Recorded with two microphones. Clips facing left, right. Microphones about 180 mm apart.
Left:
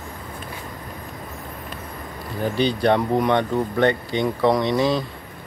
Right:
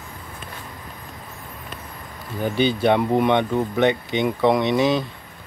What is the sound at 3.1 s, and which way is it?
Speech, 20° right (ahead or behind).